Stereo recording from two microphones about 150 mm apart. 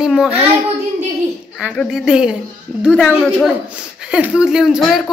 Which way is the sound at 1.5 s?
5° left (ahead or behind).